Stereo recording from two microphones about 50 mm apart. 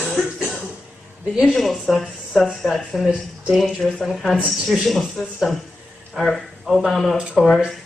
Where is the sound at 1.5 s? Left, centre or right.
Centre.